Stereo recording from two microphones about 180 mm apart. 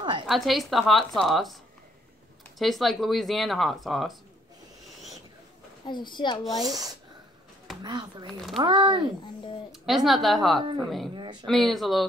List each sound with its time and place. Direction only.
0.3 s speech: centre (ahead or behind)
2.6 s speech: centre (ahead or behind)
5.9 s a woman's voice: 25° left (ahead or behind)
6.4 s speech: centre (ahead or behind)
7.8 s speech: 25° right (ahead or behind)
9.7 s speech: centre (ahead or behind)